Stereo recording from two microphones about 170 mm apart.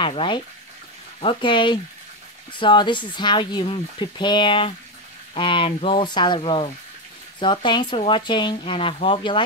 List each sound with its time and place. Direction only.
0.0 s speech: 30° left (ahead or behind)